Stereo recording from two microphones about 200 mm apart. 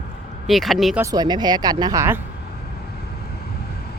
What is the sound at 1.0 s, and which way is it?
Speech, 20° right (ahead or behind).